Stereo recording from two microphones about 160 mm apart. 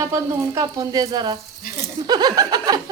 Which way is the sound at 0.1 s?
20° right (ahead or behind).